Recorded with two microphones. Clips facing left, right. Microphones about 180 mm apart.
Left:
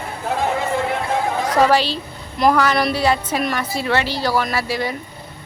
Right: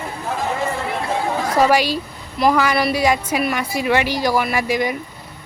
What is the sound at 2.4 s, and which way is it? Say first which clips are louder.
A woman's voice: even; centre (ahead or behind).